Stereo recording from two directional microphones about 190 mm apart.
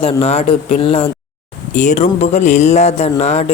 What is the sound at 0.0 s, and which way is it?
A man's voice, 30° left (ahead or behind).